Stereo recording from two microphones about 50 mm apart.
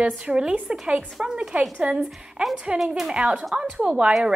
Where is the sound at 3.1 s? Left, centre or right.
Centre.